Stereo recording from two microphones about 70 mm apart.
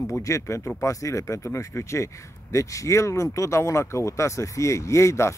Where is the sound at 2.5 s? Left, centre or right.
Left.